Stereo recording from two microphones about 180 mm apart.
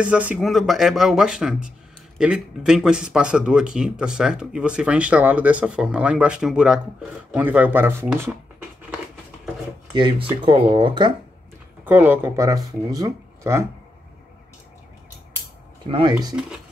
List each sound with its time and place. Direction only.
0.0 s speech: 10° right (ahead or behind)
9.9 s speech: 25° right (ahead or behind)
11.8 s speech: 10° right (ahead or behind)
15.9 s speech: 30° right (ahead or behind)